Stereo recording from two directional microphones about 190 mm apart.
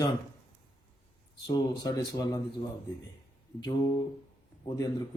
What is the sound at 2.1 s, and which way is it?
Speech, 20° left (ahead or behind).